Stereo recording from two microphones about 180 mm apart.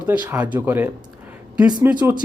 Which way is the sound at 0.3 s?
10° right (ahead or behind).